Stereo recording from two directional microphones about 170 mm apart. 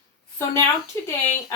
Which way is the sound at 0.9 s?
15° left (ahead or behind).